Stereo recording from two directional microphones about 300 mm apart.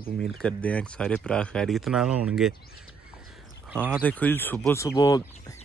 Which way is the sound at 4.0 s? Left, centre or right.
Centre.